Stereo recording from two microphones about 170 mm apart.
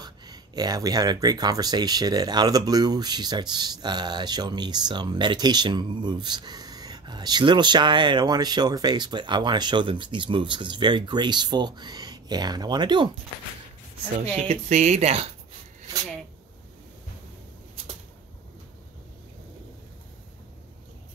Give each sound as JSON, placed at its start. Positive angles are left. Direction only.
{"t": 0.0, "sound": "speech", "side_deg": -25}
{"t": 14.1, "sound": "speech", "side_deg": -40}